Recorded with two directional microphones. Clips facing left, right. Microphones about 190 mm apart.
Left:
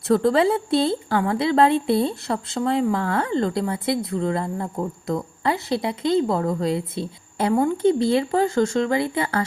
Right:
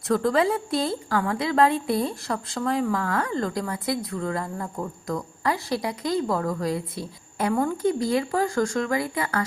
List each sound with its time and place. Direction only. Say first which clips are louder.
0.1 s a woman's voice: left 4 dB; 30° left (ahead or behind)